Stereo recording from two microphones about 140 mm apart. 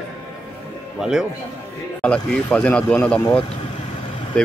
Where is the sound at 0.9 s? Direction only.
5° right (ahead or behind).